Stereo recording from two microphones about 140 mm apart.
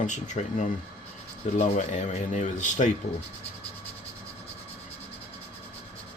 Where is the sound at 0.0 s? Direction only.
65° left (ahead or behind).